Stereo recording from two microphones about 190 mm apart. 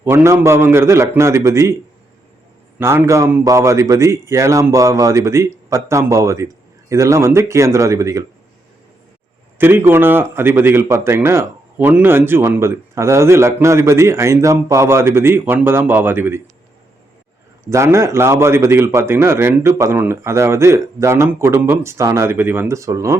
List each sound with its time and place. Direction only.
0.0 s speech: 15° right (ahead or behind)
2.7 s speech: 10° right (ahead or behind)
9.6 s speech: 10° right (ahead or behind)
17.7 s speech: 15° right (ahead or behind)